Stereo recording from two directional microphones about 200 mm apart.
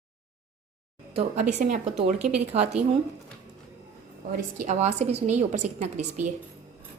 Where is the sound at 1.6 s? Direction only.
35° right (ahead or behind).